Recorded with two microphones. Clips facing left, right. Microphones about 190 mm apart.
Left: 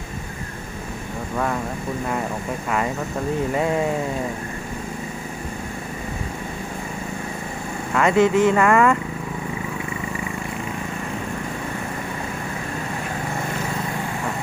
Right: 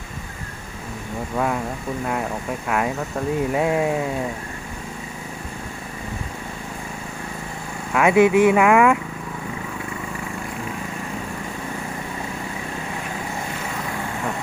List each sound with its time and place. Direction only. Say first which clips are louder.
2.6 s speech: right 1 dB; 5° right (ahead or behind)
7.9 s speech: right 2 dB; 10° right (ahead or behind)